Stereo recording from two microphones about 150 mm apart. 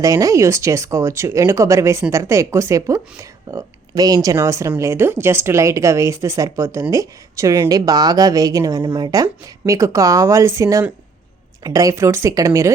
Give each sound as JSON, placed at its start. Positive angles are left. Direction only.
{"t": 0.0, "sound": "speech", "side_deg": -25}